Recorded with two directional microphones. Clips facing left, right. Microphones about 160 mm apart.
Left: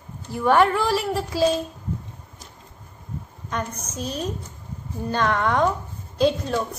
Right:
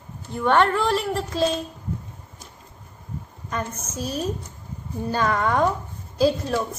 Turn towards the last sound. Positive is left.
turn(degrees=-5)  # may be behind; listen again after turning